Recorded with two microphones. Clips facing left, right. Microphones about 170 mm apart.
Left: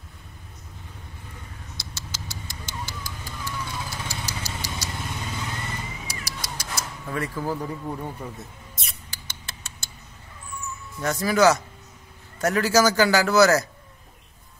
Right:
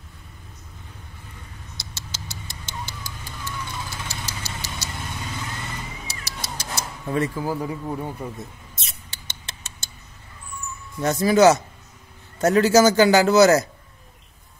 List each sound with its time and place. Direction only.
1.8 s a sound: 25° right (ahead or behind)
4.1 s vehicle: 25° right (ahead or behind)
6.0 s cat: 25° right (ahead or behind)
7.3 s speech: 10° right (ahead or behind)
8.7 s rodents: 25° right (ahead or behind)
11.0 s a man's voice: 25° right (ahead or behind)